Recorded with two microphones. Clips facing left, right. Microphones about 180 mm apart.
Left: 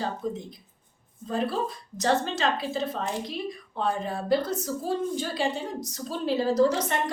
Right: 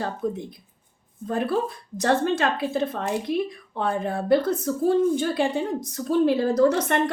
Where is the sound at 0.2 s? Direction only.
55° right (ahead or behind).